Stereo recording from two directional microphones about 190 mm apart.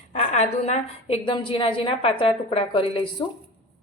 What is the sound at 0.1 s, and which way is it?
A woman's voice, 35° left (ahead or behind).